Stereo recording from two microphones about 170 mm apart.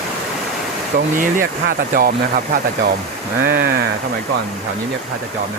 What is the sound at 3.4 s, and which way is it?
Speech, 60° right (ahead or behind).